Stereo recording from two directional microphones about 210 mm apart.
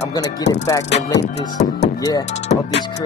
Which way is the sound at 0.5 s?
15° left (ahead or behind).